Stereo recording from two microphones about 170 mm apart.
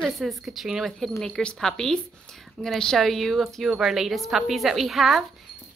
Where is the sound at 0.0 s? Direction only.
Centre (ahead or behind).